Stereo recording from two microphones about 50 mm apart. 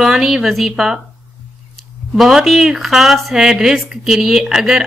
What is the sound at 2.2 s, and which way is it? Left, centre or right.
Speech, centre.